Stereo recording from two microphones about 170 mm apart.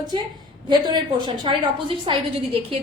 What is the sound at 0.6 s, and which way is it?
A woman's voice, 25° right (ahead or behind).